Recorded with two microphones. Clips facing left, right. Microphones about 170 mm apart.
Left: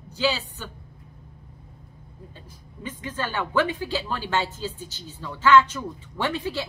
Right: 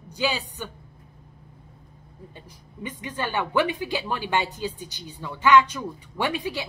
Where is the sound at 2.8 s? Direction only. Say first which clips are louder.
Even; 15° right (ahead or behind).